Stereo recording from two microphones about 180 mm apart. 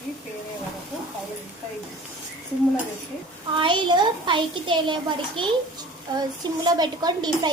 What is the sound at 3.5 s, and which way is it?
A child's voice, 25° right (ahead or behind).